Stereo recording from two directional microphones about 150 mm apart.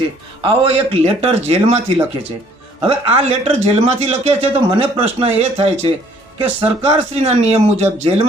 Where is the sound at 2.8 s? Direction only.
45° right (ahead or behind).